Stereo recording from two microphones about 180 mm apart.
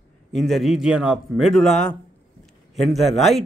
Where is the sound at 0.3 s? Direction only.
Centre (ahead or behind).